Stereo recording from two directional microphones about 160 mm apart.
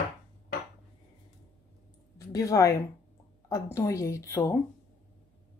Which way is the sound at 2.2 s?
20° left (ahead or behind).